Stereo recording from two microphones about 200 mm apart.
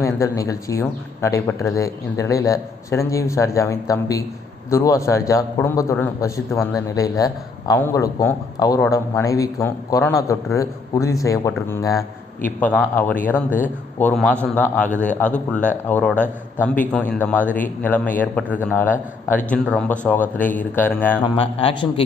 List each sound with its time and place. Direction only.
0.0 s a man's voice: 15° left (ahead or behind)
21.4 s a man's voice: 30° left (ahead or behind)